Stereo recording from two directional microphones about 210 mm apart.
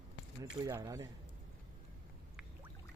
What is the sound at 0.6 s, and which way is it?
Speech, 15° right (ahead or behind).